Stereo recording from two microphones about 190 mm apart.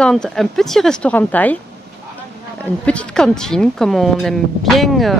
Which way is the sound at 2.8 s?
5° left (ahead or behind).